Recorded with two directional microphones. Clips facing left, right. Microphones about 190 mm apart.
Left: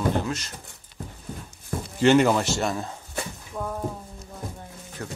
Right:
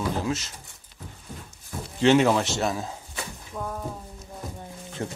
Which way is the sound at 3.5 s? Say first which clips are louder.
Left 2 dB; 5° left (ahead or behind).